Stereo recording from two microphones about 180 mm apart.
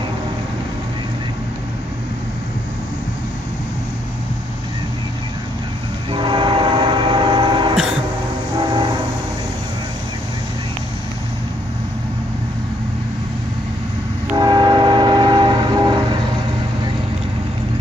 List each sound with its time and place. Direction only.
6.1 s train: 25° right (ahead or behind)
14.3 s train: 25° right (ahead or behind)